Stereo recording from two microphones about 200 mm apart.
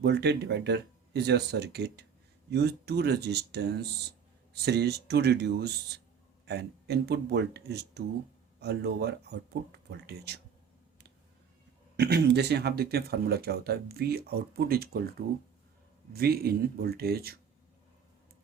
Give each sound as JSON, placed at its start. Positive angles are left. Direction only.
{"t": 0.0, "sound": "speech", "side_deg": -55}
{"t": 11.9, "sound": "speech", "side_deg": -55}
{"t": 16.1, "sound": "speech", "side_deg": -50}